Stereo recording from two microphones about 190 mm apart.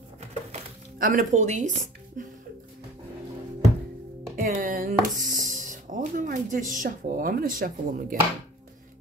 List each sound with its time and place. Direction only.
0.5 s music: 45° right (ahead or behind)
4.4 s speech: 45° right (ahead or behind)